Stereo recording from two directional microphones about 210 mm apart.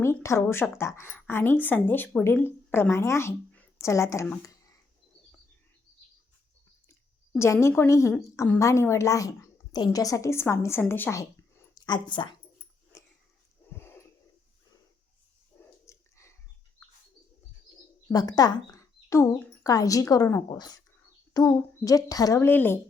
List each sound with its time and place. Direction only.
0.2 s a woman's voice: 15° left (ahead or behind)
7.3 s a woman's voice: 15° left (ahead or behind)
13.7 s wheeze: 10° left (ahead or behind)
15.5 s dog: 10° left (ahead or behind)
18.1 s a woman's voice: 20° left (ahead or behind)